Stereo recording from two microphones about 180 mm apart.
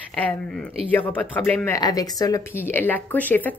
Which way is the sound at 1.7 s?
20° left (ahead or behind).